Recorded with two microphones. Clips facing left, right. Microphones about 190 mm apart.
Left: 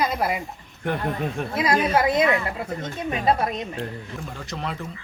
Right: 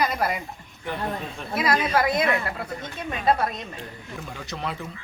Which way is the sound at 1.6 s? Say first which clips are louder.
Left 1 dB; 20° left (ahead or behind).